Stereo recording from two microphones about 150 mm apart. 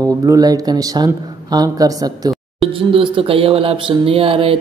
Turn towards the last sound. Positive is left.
turn(degrees=-40)  # may be behind; listen again after turning